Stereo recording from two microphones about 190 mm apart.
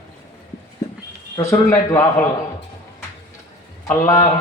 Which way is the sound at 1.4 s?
15° left (ahead or behind).